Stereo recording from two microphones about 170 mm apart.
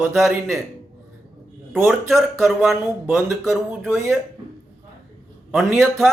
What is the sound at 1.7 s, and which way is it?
Speech, centre (ahead or behind).